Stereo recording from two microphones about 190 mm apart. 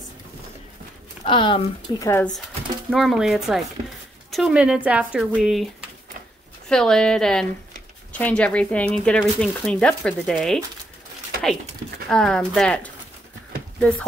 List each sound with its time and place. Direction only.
1.2 s speech: 25° left (ahead or behind)
2.0 s speech: 15° left (ahead or behind)
2.9 s speech: centre (ahead or behind)
12.1 s speech: 5° left (ahead or behind)